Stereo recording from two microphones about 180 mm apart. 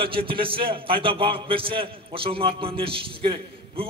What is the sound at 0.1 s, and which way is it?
A man's voice, 30° right (ahead or behind).